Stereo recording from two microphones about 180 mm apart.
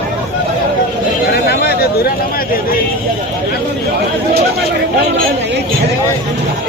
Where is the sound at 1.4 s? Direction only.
65° left (ahead or behind).